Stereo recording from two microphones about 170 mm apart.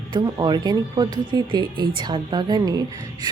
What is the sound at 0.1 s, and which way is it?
Speech, 25° right (ahead or behind).